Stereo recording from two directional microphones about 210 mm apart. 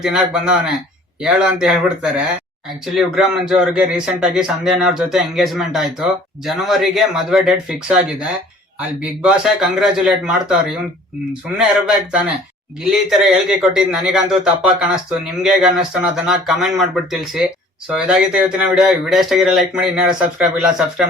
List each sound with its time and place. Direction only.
0.0 s speech: 5° right (ahead or behind)
12.8 s speech: centre (ahead or behind)